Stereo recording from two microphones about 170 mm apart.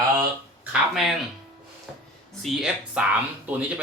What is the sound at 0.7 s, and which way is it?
Speech, centre (ahead or behind).